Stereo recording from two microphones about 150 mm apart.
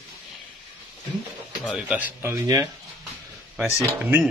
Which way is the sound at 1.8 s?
10° right (ahead or behind).